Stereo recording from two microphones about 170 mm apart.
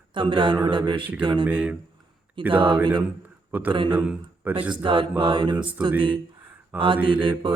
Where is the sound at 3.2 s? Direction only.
10° right (ahead or behind).